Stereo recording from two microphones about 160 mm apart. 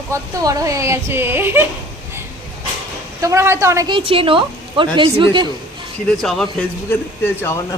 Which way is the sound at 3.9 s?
35° right (ahead or behind).